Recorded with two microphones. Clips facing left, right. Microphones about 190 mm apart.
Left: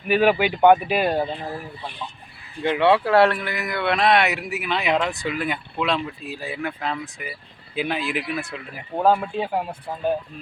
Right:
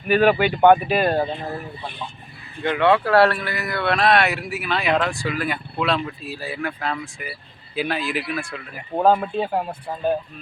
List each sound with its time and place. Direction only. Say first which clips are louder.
0.1 s speech: right 2 dB; 10° left (ahead or behind)
1.2 s speech: right 2 dB; centre (ahead or behind)
2.6 s speech: even; 25° left (ahead or behind)
7.8 s speech: right 1 dB; 15° left (ahead or behind)
9.0 s speech: right 2 dB; 5° left (ahead or behind)